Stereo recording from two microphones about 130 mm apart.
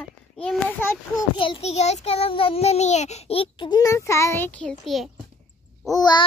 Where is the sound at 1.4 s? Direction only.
50° left (ahead or behind).